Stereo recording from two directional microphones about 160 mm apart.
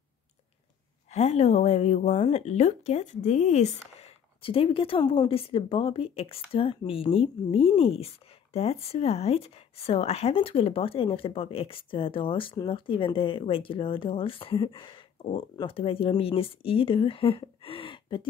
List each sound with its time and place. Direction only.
1.1 s speech: 45° left (ahead or behind)